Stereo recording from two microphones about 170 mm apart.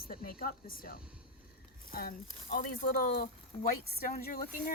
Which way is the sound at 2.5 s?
55° left (ahead or behind).